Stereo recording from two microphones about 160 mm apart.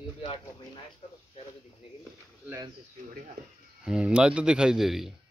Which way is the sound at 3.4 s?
90° right.